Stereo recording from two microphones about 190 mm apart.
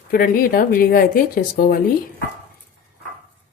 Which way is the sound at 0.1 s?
50° left (ahead or behind).